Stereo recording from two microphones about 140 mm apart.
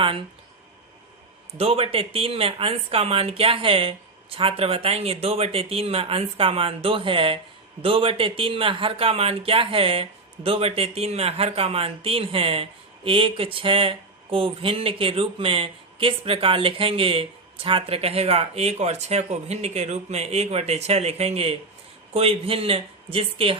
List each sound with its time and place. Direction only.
0.0 s speech: 40° right (ahead or behind)
1.5 s speech: 45° right (ahead or behind)